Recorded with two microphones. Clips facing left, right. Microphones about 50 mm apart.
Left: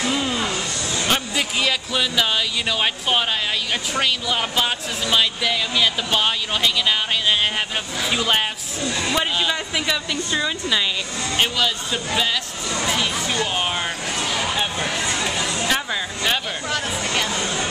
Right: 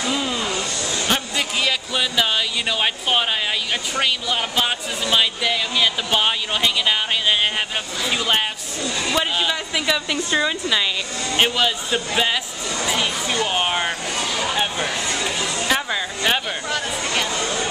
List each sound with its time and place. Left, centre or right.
0.1 s vehicle: centre
1.0 s speech: centre
8.8 s a man's voice: centre
9.1 s speech: centre
12.7 s speech: centre
13.0 s speech: centre
15.0 s a sound: centre
15.6 s a sound: centre
16.6 s chatter: centre